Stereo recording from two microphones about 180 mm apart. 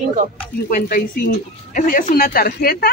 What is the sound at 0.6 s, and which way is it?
Speech, 50° left (ahead or behind).